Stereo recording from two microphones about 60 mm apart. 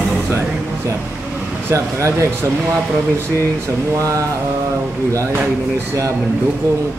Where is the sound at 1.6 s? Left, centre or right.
Right.